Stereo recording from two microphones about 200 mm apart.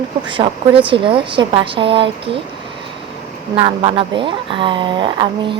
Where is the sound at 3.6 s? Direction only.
25° right (ahead or behind).